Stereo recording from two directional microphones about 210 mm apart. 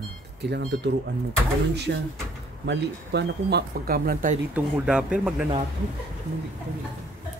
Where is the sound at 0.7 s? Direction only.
55° right (ahead or behind).